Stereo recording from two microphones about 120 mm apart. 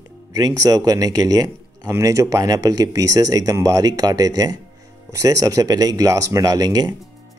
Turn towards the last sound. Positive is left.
turn(degrees=-30)  # may be behind; listen again after turning